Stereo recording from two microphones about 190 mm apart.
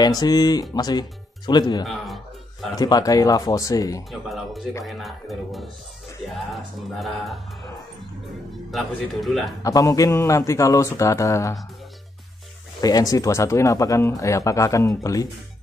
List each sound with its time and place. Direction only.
0.0 s speech: 20° left (ahead or behind)
4.1 s music: centre (ahead or behind)
8.7 s music: centre (ahead or behind)
9.6 s speech: 15° left (ahead or behind)
12.8 s speech: 20° left (ahead or behind)